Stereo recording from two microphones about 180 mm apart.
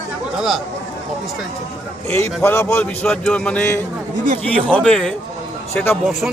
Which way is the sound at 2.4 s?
15° left (ahead or behind).